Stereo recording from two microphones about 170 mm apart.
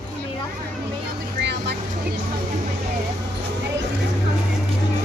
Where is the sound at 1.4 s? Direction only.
90° right.